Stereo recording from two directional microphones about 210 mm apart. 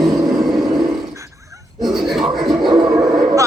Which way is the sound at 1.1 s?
15° right (ahead or behind).